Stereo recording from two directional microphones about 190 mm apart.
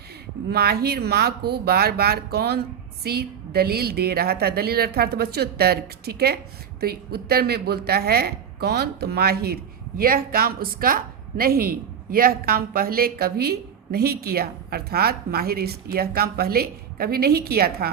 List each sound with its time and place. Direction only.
0.5 s a woman's voice: 55° right (ahead or behind)